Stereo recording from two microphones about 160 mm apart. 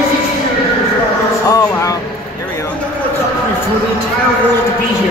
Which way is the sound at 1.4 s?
20° left (ahead or behind).